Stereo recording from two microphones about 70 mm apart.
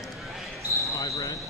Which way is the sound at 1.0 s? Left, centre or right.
Left.